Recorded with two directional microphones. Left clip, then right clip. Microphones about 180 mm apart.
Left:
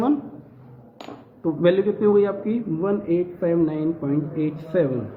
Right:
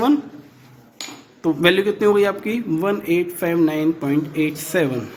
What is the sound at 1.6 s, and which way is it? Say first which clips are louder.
A man's voice: right 2 dB; 40° right (ahead or behind).